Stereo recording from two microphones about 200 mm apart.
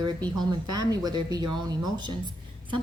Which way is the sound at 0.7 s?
20° right (ahead or behind).